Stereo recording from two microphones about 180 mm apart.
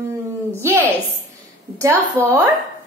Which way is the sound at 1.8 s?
15° right (ahead or behind).